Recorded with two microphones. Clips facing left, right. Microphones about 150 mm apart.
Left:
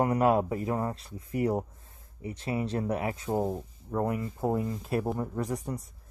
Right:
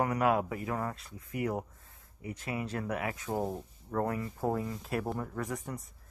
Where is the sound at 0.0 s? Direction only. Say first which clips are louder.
Left 4 dB; 30° left (ahead or behind).